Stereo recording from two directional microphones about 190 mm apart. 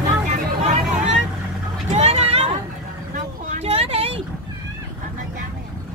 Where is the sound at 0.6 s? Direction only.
35° right (ahead or behind).